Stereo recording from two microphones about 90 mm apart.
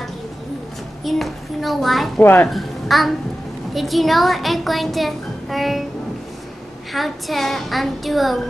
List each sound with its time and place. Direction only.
1.0 s a child's voice: centre (ahead or behind)
2.1 s a woman's voice: 25° left (ahead or behind)
2.4 s a child's voice: centre (ahead or behind)
6.9 s a child's voice: centre (ahead or behind)